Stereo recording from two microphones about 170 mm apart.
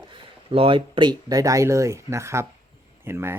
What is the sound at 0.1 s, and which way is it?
Speech, 30° right (ahead or behind).